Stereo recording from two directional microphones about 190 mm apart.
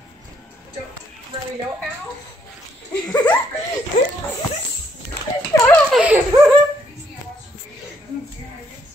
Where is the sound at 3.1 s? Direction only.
10° left (ahead or behind).